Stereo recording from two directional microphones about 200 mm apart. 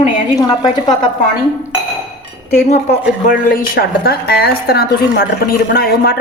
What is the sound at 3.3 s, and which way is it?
A woman's voice, 45° left (ahead or behind).